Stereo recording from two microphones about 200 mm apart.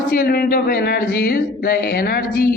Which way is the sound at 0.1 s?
45° left (ahead or behind).